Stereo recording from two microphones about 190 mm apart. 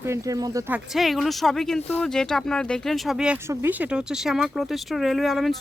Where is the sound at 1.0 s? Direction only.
Centre (ahead or behind).